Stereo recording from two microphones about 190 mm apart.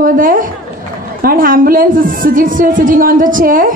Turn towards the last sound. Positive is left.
turn(degrees=-45)  # may be behind; listen again after turning